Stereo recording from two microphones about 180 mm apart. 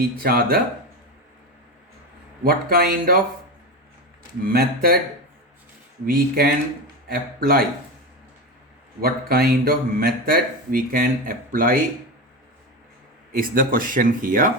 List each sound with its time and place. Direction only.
0.0 s speech: 60° right (ahead or behind)
2.4 s speech: 55° right (ahead or behind)
4.4 s speech: 55° right (ahead or behind)
6.1 s speech: 60° right (ahead or behind)
9.0 s speech: 55° right (ahead or behind)
13.3 s speech: 55° right (ahead or behind)